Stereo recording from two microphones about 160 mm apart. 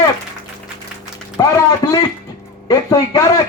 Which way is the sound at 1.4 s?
25° left (ahead or behind).